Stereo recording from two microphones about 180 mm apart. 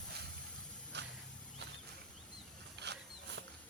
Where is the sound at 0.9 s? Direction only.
70° right (ahead or behind).